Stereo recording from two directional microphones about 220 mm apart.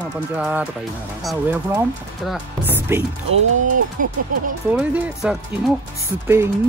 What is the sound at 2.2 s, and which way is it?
Speech, 5° right (ahead or behind).